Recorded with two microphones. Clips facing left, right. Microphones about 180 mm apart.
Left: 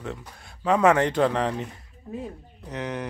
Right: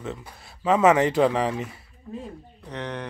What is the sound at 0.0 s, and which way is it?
Speech, centre (ahead or behind).